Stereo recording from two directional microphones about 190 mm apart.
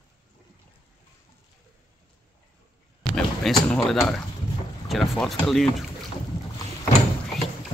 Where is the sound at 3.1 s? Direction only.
5° left (ahead or behind).